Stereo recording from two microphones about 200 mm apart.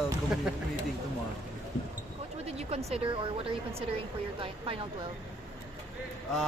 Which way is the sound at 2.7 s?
30° right (ahead or behind).